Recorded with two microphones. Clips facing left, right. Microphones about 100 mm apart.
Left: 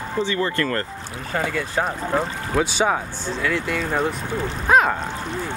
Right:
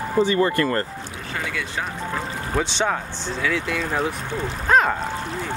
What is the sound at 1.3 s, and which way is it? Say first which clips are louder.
Speech: left 5 dB; 40° left (ahead or behind).